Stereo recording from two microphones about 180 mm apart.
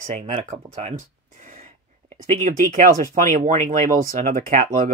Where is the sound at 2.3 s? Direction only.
45° right (ahead or behind).